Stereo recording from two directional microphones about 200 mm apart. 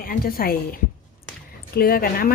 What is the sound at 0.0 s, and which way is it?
Speech, 45° left (ahead or behind).